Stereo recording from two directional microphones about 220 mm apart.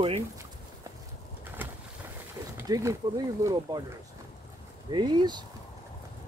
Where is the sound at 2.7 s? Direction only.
15° right (ahead or behind).